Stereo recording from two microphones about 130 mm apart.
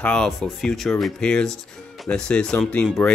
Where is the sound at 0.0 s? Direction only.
5° left (ahead or behind).